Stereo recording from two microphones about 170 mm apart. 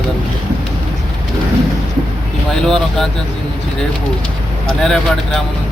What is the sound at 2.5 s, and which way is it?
Vehicle, 5° left (ahead or behind).